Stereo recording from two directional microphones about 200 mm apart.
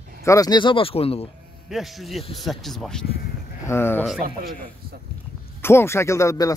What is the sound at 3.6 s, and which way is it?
Speech, 10° left (ahead or behind).